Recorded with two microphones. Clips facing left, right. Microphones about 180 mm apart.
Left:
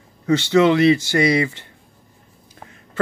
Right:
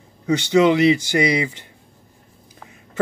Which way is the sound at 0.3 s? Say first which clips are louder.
Left 1 dB; 15° right (ahead or behind).